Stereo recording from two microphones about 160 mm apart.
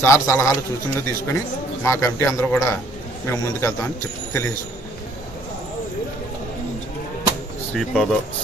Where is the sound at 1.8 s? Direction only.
15° left (ahead or behind).